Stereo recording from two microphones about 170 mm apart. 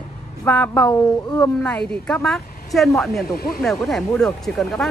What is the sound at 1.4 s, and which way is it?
Speech, 5° left (ahead or behind).